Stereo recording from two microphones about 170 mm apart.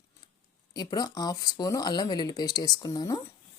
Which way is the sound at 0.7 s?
25° left (ahead or behind).